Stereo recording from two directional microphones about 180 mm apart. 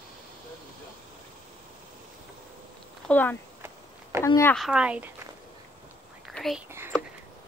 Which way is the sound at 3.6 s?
15° right (ahead or behind).